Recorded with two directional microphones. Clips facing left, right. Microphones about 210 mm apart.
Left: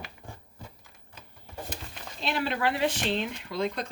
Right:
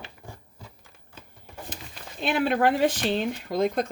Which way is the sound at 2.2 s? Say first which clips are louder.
Right 6 dB; 50° right (ahead or behind).